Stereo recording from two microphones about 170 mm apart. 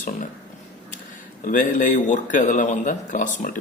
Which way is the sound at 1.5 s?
50° left (ahead or behind).